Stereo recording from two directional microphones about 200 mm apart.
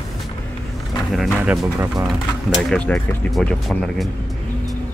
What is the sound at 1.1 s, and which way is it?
Speech, centre (ahead or behind).